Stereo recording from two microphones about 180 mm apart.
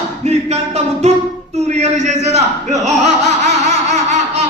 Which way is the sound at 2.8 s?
40° right (ahead or behind).